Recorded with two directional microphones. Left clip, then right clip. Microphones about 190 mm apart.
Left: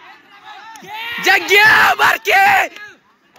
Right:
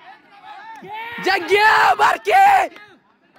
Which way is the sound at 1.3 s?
20° right (ahead or behind).